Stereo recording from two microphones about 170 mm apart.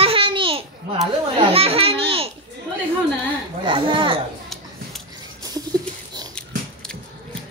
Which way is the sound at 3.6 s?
30° right (ahead or behind).